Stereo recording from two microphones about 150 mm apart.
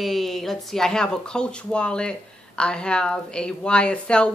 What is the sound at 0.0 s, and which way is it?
Speech, centre (ahead or behind).